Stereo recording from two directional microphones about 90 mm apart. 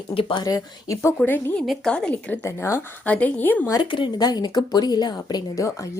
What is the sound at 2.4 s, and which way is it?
Speech, 35° left (ahead or behind).